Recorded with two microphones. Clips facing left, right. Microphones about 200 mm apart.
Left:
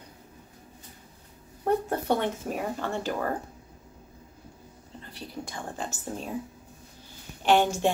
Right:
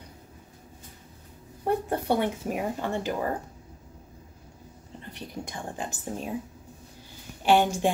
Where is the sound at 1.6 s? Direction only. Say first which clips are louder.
Left 1 dB; 10° right (ahead or behind).